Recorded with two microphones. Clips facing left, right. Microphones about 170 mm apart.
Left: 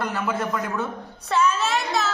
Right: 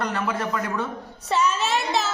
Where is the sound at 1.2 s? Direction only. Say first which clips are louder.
Left 1 dB; 20° right (ahead or behind).